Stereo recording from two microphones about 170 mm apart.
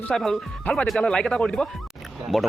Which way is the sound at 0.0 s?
5° left (ahead or behind).